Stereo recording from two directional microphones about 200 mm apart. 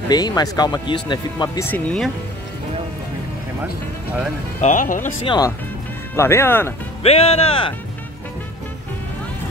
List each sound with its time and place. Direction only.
0.1 s speech: 20° left (ahead or behind)
4.6 s speech: 40° left (ahead or behind)
5.2 s speech: 20° left (ahead or behind)
6.1 s speech: 10° left (ahead or behind)
7.0 s speech: 30° left (ahead or behind)